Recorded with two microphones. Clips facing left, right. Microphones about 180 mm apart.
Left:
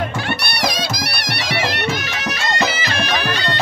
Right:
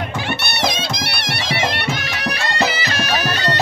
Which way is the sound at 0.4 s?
25° right (ahead or behind).